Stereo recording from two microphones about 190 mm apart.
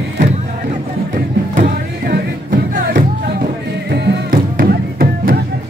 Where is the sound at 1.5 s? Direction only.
45° right (ahead or behind).